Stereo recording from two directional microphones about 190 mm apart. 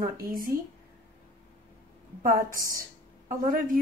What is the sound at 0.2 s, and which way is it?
Speech, 50° right (ahead or behind).